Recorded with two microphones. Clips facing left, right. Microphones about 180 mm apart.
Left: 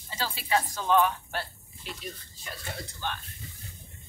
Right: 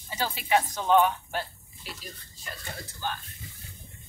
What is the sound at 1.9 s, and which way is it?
Speech, centre (ahead or behind).